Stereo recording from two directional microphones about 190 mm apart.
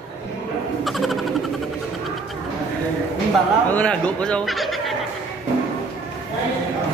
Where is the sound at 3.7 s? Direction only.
5° left (ahead or behind).